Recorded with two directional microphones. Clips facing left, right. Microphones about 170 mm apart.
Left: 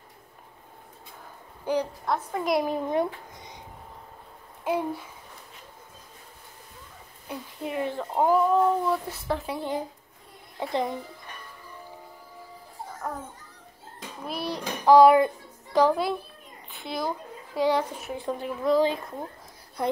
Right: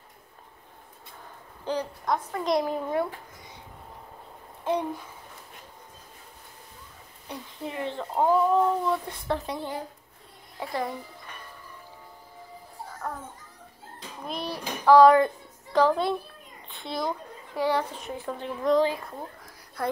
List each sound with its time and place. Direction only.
1.6 s a woman's voice: 10° left (ahead or behind)
2.6 s a child's voice: 15° left (ahead or behind)
4.6 s speech: 5° left (ahead or behind)
7.2 s a woman's voice: 15° left (ahead or behind)
10.6 s a woman's voice: 20° left (ahead or behind)
13.0 s babbling: 5° left (ahead or behind)
14.2 s a child's voice: 5° left (ahead or behind)
17.6 s speech: 15° left (ahead or behind)
18.6 s speech: 5° left (ahead or behind)
19.8 s a woman's voice: 20° left (ahead or behind)